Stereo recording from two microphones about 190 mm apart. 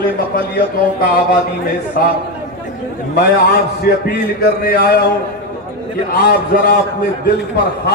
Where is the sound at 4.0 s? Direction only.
50° left (ahead or behind).